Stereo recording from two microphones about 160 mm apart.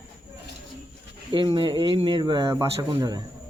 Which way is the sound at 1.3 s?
30° right (ahead or behind).